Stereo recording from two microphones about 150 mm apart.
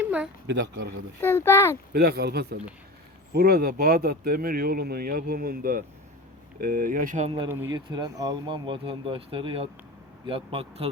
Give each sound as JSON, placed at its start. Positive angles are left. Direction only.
{"t": 0.0, "sound": "a sound", "side_deg": -10}
{"t": 1.2, "sound": "speech", "side_deg": 15}
{"t": 1.9, "sound": "speech", "side_deg": -90}
{"t": 7.7, "sound": "speech", "side_deg": -30}
{"t": 8.4, "sound": "speech", "side_deg": -35}